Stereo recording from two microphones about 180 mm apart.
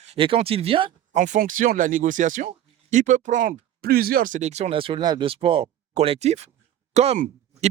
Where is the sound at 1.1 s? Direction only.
45° right (ahead or behind).